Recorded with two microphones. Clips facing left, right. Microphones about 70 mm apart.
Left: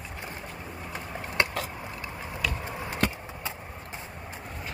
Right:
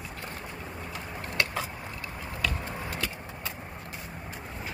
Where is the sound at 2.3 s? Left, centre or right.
Centre.